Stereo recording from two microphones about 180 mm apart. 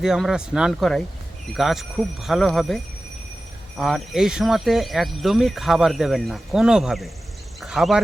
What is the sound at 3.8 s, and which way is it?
Speech, centre (ahead or behind).